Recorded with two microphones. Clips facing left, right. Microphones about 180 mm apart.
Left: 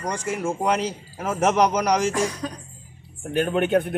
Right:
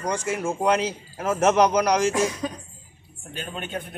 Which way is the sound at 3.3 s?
65° left (ahead or behind).